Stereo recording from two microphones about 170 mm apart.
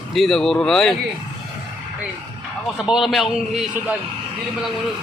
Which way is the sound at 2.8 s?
5° right (ahead or behind).